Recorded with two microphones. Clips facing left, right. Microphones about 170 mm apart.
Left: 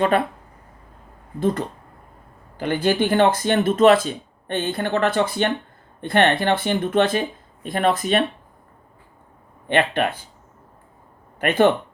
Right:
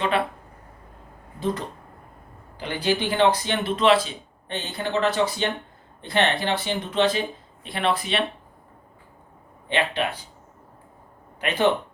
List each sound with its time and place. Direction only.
2.6 s speech: 50° left (ahead or behind)
9.6 s speech: 55° left (ahead or behind)
11.3 s speech: 50° left (ahead or behind)